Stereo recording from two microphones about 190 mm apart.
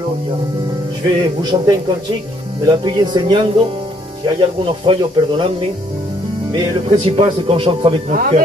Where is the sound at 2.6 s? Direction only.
25° right (ahead or behind).